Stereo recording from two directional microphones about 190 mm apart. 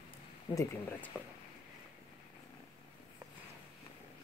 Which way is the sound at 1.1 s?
5° right (ahead or behind).